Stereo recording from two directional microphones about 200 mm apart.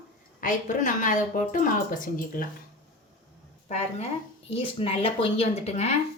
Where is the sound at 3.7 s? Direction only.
35° left (ahead or behind).